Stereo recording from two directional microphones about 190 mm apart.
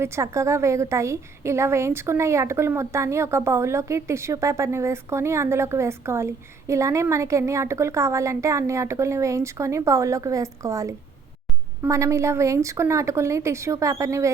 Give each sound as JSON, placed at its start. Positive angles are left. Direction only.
{"t": 0.0, "sound": "a woman's voice", "side_deg": -15}